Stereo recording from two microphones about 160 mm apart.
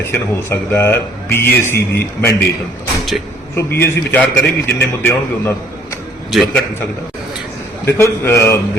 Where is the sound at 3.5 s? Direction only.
15° left (ahead or behind).